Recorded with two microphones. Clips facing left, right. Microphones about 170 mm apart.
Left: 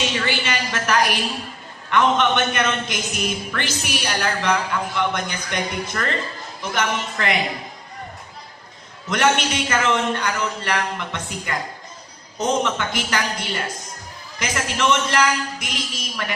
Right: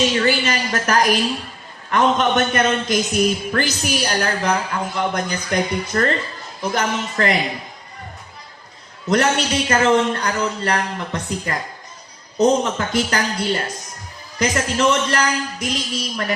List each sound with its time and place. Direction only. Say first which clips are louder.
0.2 s a man's voice: right 5 dB; 40° right (ahead or behind)
9.0 s a man's voice: right 2 dB; 35° right (ahead or behind)